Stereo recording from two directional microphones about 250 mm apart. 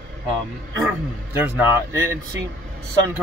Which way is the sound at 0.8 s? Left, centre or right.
Centre.